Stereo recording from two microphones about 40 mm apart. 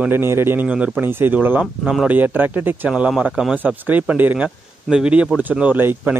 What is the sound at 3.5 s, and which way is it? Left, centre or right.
Speech, right.